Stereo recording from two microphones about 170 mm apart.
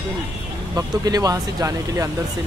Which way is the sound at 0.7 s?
20° right (ahead or behind).